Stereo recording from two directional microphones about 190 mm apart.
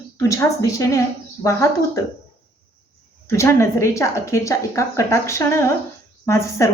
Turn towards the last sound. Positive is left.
turn(degrees=15)  # may be behind; listen again after turning